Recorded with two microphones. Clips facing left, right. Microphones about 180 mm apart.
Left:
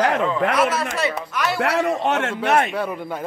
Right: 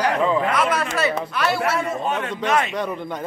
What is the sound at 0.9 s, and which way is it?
Speech, 20° left (ahead or behind).